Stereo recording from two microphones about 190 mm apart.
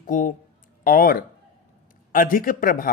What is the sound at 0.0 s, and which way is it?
Speech, 45° left (ahead or behind).